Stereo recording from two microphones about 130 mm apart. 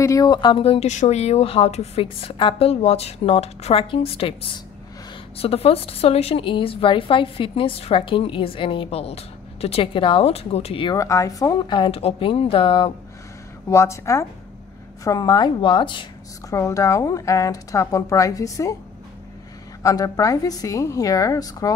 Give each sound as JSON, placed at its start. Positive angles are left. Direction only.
{"t": 0.0, "sound": "a woman's voice", "side_deg": 25}
{"t": 11.0, "sound": "a woman's voice", "side_deg": 25}
{"t": 13.7, "sound": "a woman's voice", "side_deg": 20}
{"t": 16.4, "sound": "speech", "side_deg": 25}
{"t": 19.8, "sound": "speech", "side_deg": 25}